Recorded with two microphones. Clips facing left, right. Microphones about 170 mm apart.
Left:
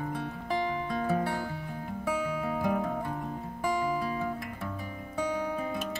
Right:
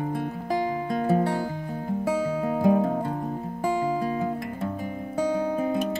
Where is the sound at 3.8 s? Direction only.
45° right (ahead or behind).